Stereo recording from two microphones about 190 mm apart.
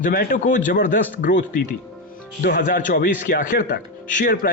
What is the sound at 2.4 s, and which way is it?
Speech, 45° left (ahead or behind).